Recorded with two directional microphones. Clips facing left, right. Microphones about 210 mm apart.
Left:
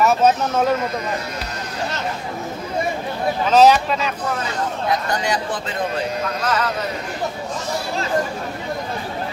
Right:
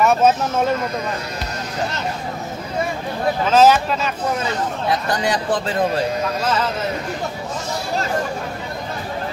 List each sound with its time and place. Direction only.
0.0 s speech: centre (ahead or behind)
3.4 s speech: centre (ahead or behind)
5.1 s speech: 35° right (ahead or behind)